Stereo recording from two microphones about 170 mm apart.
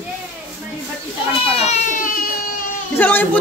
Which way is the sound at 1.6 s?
45° left (ahead or behind).